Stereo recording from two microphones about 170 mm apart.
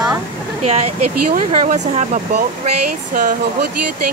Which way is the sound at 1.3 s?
50° right (ahead or behind).